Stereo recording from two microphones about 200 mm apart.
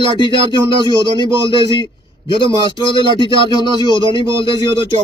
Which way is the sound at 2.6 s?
25° left (ahead or behind).